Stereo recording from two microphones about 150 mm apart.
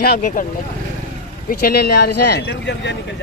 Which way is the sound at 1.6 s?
90° left.